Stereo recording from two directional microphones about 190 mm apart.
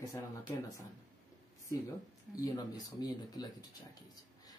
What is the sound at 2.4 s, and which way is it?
Speech, 20° left (ahead or behind).